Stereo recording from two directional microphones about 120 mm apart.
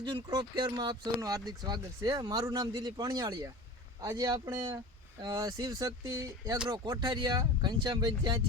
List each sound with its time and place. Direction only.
0.3 s speech: 35° right (ahead or behind)